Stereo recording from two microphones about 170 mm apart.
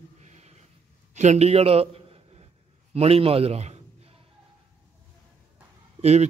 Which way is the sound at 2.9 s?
35° right (ahead or behind).